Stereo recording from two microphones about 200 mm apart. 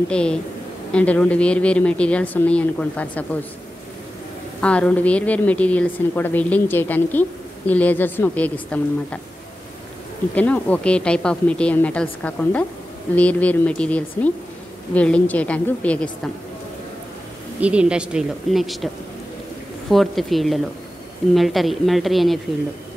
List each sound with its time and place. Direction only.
0.1 s a woman's voice: 5° left (ahead or behind)
4.6 s a woman's voice: 5° left (ahead or behind)
10.3 s a woman's voice: 5° left (ahead or behind)
17.6 s speech: 5° right (ahead or behind)
19.9 s speech: centre (ahead or behind)